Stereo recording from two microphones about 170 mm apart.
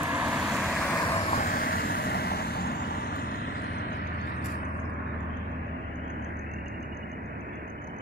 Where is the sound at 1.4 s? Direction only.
60° left (ahead or behind).